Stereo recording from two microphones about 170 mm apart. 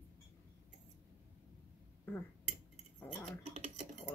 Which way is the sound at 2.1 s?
10° left (ahead or behind).